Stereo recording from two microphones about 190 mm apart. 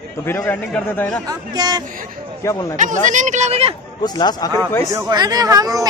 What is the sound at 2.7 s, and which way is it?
Speech, 40° right (ahead or behind).